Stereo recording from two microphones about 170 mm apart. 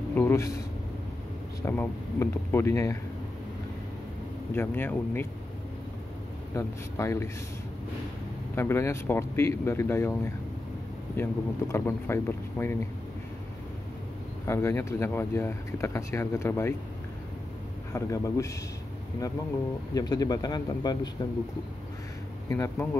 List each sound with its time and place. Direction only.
0.1 s speech: 15° left (ahead or behind)
1.6 s speech: 15° left (ahead or behind)
4.6 s speech: 15° left (ahead or behind)
6.5 s speech: 15° left (ahead or behind)
8.5 s speech: 15° left (ahead or behind)
14.4 s speech: 15° left (ahead or behind)
17.9 s speech: 20° left (ahead or behind)
19.9 s speech: 20° left (ahead or behind)
22.5 s speech: 15° left (ahead or behind)